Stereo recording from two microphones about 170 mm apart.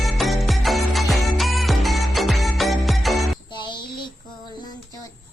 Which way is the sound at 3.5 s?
25° left (ahead or behind).